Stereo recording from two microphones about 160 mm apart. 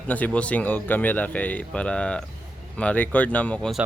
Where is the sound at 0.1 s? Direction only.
10° left (ahead or behind).